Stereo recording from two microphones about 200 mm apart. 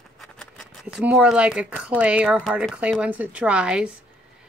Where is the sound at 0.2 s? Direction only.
Centre (ahead or behind).